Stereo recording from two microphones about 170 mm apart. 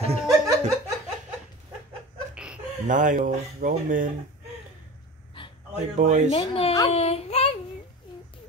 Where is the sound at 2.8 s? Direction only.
50° right (ahead or behind).